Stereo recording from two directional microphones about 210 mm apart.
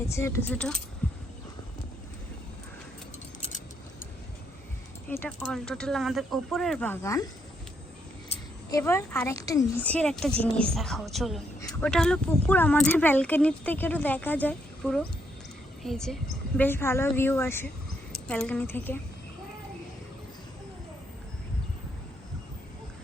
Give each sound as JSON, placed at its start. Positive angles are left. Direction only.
{"t": 0.1, "sound": "speech", "side_deg": 10}
{"t": 5.0, "sound": "a woman's voice", "side_deg": 10}
{"t": 8.7, "sound": "a woman's voice", "side_deg": 15}
{"t": 11.6, "sound": "a sound", "side_deg": 15}
{"t": 11.9, "sound": "a woman's voice", "side_deg": 5}